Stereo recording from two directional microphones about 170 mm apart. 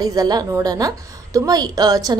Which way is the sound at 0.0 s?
20° right (ahead or behind).